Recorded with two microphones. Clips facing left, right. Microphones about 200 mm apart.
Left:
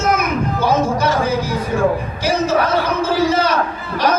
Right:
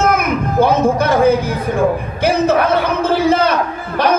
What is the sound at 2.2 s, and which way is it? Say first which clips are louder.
A man's voice: right 4 dB; 55° right (ahead or behind).